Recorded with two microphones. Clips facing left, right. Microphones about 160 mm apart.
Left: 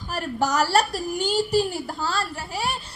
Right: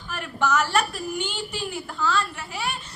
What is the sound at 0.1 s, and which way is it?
Speech, 35° left (ahead or behind).